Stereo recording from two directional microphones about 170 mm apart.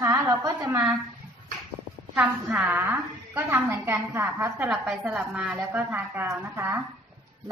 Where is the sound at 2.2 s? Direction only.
10° right (ahead or behind).